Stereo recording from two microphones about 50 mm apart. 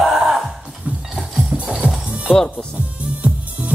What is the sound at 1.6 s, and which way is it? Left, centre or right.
Music, right.